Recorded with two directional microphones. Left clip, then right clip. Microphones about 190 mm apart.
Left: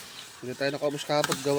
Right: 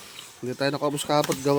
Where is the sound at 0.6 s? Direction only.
45° right (ahead or behind).